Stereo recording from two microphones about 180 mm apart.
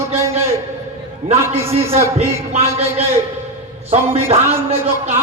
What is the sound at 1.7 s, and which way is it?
Speech, 30° right (ahead or behind).